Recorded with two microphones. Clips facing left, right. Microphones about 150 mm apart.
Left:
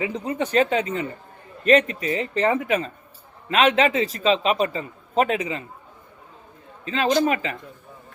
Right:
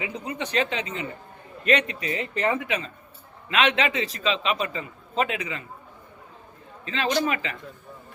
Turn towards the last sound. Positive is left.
turn(degrees=40)  # may be behind; listen again after turning